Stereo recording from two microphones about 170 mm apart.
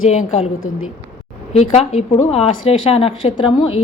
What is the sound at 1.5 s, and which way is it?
Speech, 40° left (ahead or behind).